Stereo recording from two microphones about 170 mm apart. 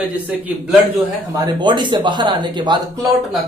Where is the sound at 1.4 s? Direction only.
25° right (ahead or behind).